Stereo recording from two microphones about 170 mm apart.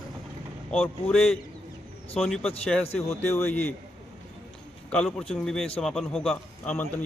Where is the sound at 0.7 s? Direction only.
5° left (ahead or behind).